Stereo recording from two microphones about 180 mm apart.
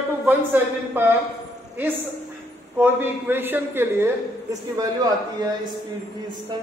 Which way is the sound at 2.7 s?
10° right (ahead or behind).